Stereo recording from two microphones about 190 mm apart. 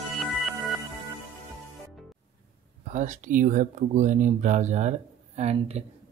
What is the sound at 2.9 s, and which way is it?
Speech, 40° right (ahead or behind).